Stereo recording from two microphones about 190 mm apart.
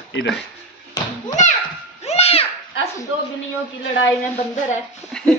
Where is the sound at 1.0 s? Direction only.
20° left (ahead or behind).